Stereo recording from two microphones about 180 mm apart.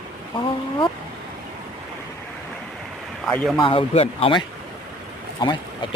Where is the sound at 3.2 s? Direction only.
Centre (ahead or behind).